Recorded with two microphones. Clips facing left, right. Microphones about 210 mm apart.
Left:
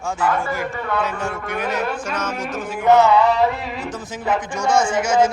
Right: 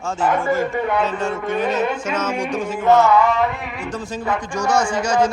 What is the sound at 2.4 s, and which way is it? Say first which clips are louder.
Music: right 4 dB; 5° left (ahead or behind).